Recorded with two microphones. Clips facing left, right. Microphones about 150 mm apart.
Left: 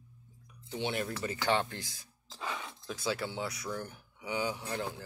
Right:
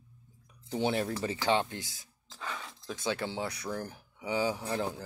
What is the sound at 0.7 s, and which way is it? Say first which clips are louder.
Speech: right 5 dB; 40° right (ahead or behind).